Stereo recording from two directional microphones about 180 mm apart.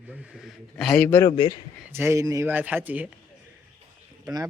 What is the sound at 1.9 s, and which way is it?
Speech, 15° right (ahead or behind).